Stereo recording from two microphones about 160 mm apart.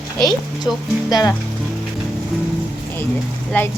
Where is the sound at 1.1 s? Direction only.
25° left (ahead or behind).